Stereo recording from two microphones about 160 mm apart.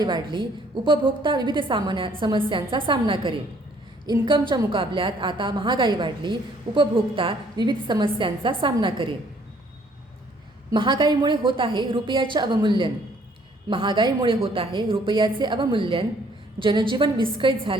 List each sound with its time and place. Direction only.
0.0 s a woman's voice: 30° right (ahead or behind)
10.7 s a woman's voice: 30° right (ahead or behind)